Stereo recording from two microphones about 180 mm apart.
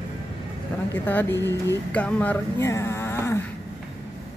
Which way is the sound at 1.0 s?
10° left (ahead or behind).